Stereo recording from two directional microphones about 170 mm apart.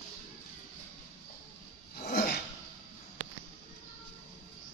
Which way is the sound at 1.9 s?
65° left (ahead or behind).